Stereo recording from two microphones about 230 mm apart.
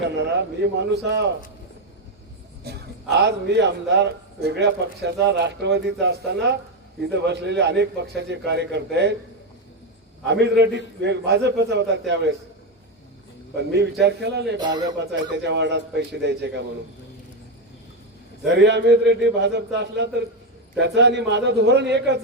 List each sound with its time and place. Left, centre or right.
0.6 s a man's voice: right
2.6 s a man's voice: right
10.2 s a man's voice: right
14.0 s a man's voice: right
14.6 s a man's voice: centre
15.0 s a man's voice: right
18.5 s a man's voice: right